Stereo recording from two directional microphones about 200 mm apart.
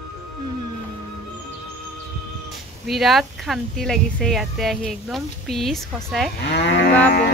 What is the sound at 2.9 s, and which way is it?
Speech, centre (ahead or behind).